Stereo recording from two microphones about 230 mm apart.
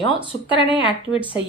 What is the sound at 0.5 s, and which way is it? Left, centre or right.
Speech, left.